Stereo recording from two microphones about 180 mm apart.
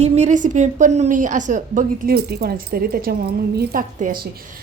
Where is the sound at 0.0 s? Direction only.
40° right (ahead or behind).